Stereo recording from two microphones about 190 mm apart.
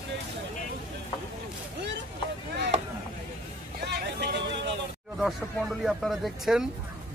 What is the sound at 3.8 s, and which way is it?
Vehicle, 60° right (ahead or behind).